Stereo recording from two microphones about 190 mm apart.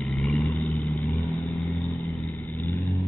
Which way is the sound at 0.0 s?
Centre (ahead or behind).